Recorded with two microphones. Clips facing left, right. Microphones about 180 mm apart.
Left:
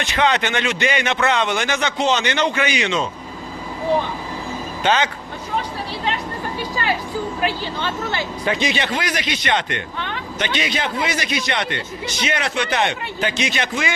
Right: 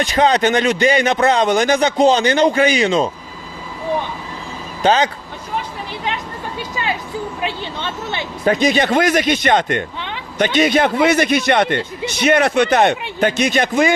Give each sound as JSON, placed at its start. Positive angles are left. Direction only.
{"t": 0.0, "sound": "a man's voice", "side_deg": -35}
{"t": 4.8, "sound": "speech", "side_deg": -35}
{"t": 7.4, "sound": "speech", "side_deg": -25}
{"t": 8.4, "sound": "a man's voice", "side_deg": -45}